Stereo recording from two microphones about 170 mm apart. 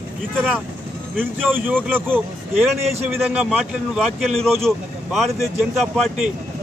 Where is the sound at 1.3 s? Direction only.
10° right (ahead or behind).